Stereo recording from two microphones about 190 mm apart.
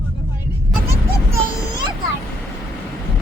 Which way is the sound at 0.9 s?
20° right (ahead or behind).